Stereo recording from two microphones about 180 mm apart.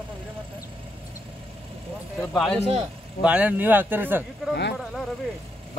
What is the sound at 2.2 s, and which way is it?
Speech, 5° left (ahead or behind).